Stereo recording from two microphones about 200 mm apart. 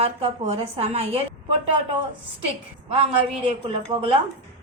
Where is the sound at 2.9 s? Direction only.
30° right (ahead or behind).